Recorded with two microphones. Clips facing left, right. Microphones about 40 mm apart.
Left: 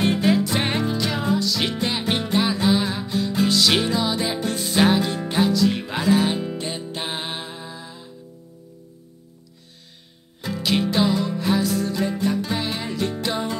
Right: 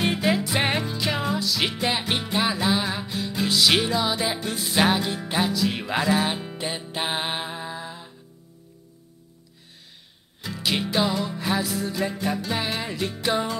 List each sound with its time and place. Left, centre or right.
0.0 s music: centre
10.6 s music: centre